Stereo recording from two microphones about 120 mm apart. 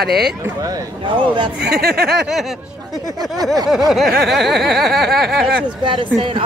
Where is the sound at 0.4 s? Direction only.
30° right (ahead or behind).